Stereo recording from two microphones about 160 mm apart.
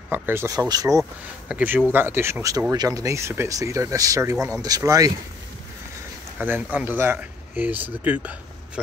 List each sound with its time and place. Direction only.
0.1 s speech: 15° right (ahead or behind)
1.5 s speech: 10° right (ahead or behind)
6.4 s speech: 10° right (ahead or behind)